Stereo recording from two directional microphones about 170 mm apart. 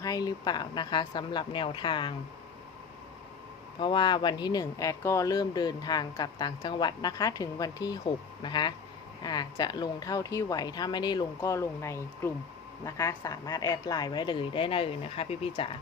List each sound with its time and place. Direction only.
0.0 s speech: 20° left (ahead or behind)
3.8 s speech: 25° left (ahead or behind)